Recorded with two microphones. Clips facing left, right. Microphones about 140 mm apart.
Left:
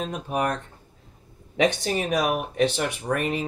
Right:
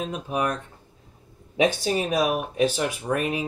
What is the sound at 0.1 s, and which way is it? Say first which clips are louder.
Speech: even; 45° left (ahead or behind).